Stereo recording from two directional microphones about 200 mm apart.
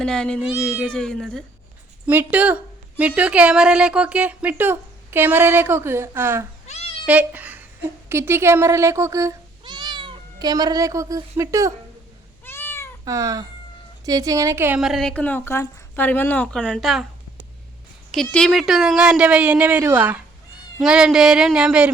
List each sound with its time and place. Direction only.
0.0 s a woman's voice: 5° left (ahead or behind)
2.0 s a woman's voice: 10° right (ahead or behind)
12.5 s cat: 10° left (ahead or behind)
13.1 s a woman's voice: 15° right (ahead or behind); by 17.1 s centre (ahead or behind)
18.1 s a woman's voice: 5° left (ahead or behind)